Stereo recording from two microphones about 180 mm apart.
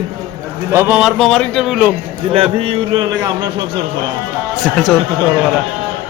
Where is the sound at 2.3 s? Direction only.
30° right (ahead or behind).